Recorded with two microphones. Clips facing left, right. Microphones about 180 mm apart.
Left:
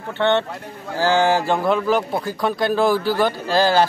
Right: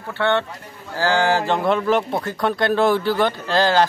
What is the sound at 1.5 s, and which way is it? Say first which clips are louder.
Speech: even; centre (ahead or behind).